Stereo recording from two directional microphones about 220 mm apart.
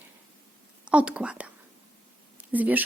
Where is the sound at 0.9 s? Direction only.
5° right (ahead or behind).